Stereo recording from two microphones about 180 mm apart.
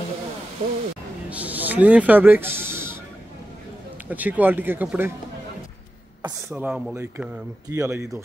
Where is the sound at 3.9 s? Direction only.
10° right (ahead or behind).